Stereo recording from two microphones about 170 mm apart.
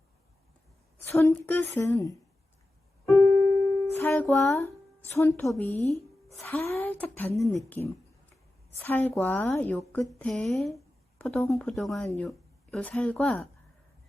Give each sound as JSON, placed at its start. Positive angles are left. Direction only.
{"t": 1.2, "sound": "speech", "side_deg": 15}
{"t": 3.2, "sound": "music", "side_deg": 20}
{"t": 5.5, "sound": "speech", "side_deg": 10}